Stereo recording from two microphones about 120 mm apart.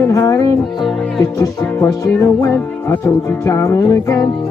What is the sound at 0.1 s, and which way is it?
Speech, 25° left (ahead or behind).